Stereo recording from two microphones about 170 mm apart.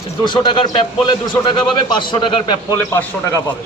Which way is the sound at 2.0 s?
30° left (ahead or behind).